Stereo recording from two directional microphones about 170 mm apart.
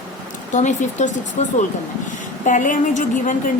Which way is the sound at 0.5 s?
45° left (ahead or behind).